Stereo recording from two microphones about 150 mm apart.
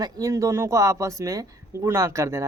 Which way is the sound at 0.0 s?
20° right (ahead or behind).